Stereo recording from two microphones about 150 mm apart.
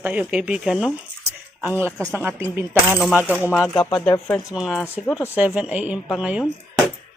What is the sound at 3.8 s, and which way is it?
Speech, 25° left (ahead or behind).